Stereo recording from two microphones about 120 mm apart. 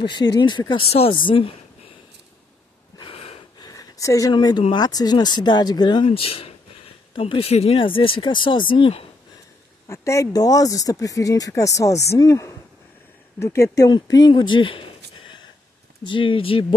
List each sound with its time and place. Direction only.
0.0 s speech: 40° left (ahead or behind)
3.0 s wheeze: 50° left (ahead or behind)
3.5 s a sound: 30° left (ahead or behind)
4.3 s speech: 35° left (ahead or behind)
9.8 s speech: 25° left (ahead or behind)
13.9 s speech: 35° left (ahead or behind)
16.0 s speech: 45° left (ahead or behind)